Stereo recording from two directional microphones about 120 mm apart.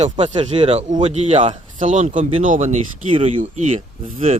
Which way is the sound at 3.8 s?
55° right (ahead or behind).